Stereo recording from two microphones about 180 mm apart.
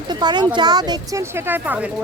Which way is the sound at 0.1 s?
25° right (ahead or behind).